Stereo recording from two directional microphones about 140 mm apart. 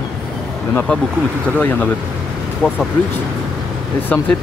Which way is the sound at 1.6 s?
10° left (ahead or behind).